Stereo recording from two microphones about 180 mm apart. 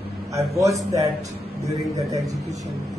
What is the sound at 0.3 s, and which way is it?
Speech, 15° right (ahead or behind).